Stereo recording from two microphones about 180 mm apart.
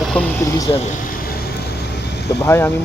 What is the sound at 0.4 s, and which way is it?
Speech, 20° left (ahead or behind).